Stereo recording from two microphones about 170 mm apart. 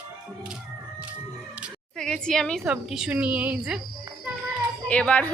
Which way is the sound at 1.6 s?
5° left (ahead or behind).